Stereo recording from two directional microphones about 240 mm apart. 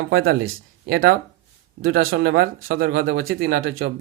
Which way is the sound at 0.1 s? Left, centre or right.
Right.